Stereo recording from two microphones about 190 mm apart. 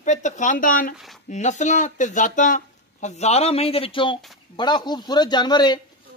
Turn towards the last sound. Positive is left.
turn(degrees=25)  # may be behind; listen again after turning